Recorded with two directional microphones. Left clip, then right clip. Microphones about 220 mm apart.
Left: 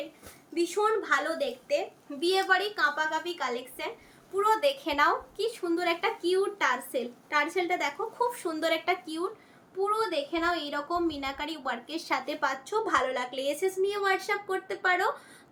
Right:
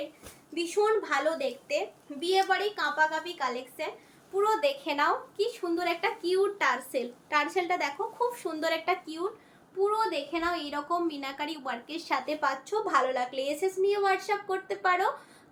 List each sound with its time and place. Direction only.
0.5 s a woman's voice: 15° left (ahead or behind)